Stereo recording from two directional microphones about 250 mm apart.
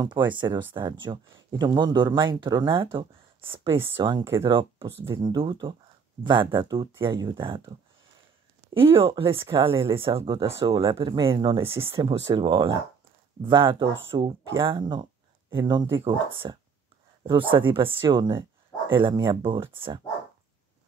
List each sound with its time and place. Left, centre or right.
0.0 s speech: centre
8.7 s speech: right